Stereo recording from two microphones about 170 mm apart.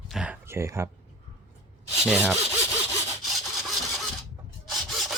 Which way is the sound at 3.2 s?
Centre (ahead or behind).